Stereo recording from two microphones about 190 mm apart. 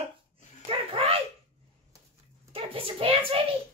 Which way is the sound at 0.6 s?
30° right (ahead or behind).